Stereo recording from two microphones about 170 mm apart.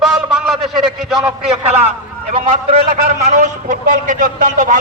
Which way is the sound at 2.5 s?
40° right (ahead or behind).